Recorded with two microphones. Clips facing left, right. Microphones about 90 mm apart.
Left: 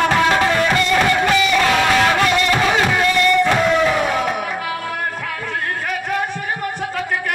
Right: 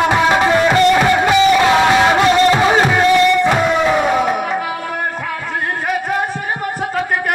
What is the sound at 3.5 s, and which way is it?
Crowd, 15° right (ahead or behind).